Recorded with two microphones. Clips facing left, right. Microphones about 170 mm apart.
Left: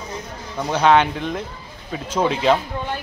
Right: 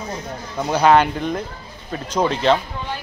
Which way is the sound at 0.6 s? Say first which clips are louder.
Right 1 dB; 5° right (ahead or behind).